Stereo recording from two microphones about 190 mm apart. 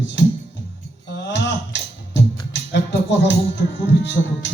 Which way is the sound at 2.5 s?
70° left (ahead or behind).